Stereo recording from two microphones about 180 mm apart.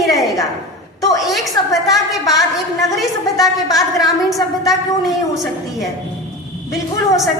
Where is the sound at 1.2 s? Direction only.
Centre (ahead or behind).